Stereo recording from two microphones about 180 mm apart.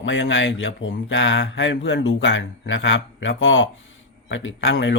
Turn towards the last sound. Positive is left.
turn(degrees=90)